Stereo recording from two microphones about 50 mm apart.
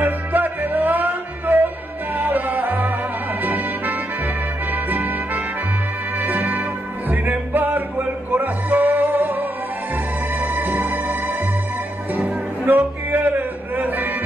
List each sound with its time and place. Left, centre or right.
0.0 s music: right